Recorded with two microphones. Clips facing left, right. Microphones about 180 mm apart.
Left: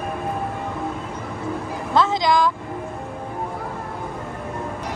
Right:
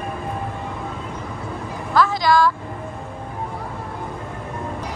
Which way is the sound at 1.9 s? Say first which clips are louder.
Right 1 dB; 20° left (ahead or behind).